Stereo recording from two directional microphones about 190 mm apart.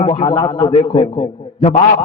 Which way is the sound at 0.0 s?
35° left (ahead or behind).